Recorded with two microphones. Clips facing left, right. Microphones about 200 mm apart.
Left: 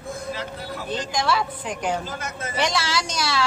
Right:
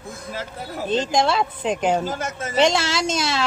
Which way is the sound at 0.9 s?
25° right (ahead or behind).